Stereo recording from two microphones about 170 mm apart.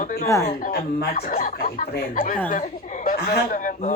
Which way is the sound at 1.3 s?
50° left (ahead or behind).